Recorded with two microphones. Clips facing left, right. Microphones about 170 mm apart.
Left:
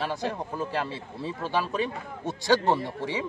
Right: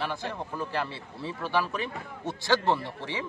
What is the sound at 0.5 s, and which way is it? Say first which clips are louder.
A man's voice: left 2 dB; 20° left (ahead or behind).